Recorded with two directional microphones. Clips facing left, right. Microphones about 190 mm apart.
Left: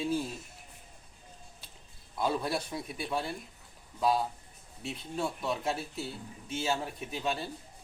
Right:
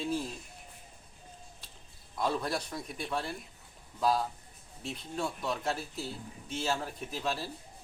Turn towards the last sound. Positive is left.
turn(degrees=0)  # may be behind; listen again after turning